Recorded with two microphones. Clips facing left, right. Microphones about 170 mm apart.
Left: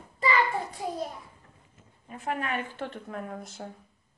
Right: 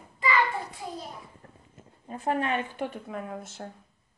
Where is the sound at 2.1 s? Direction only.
35° right (ahead or behind).